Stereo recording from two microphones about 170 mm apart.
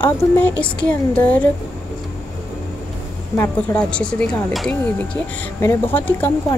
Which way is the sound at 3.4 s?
5° left (ahead or behind).